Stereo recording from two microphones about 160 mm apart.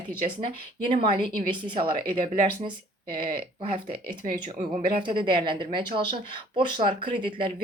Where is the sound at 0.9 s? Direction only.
30° right (ahead or behind).